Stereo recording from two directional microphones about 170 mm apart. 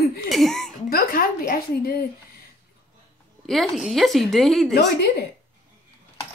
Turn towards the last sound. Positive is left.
turn(degrees=70)  # may be behind; listen again after turning